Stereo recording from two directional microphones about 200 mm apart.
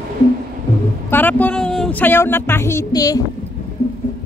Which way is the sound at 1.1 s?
10° left (ahead or behind).